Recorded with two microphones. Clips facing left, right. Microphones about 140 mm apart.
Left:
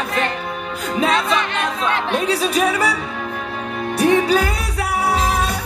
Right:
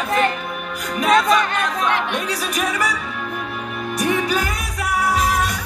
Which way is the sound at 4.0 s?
30° left (ahead or behind).